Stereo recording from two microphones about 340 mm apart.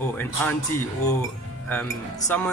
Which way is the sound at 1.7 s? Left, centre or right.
Centre.